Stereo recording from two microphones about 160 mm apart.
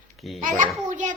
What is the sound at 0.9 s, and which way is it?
Speech, 50° right (ahead or behind).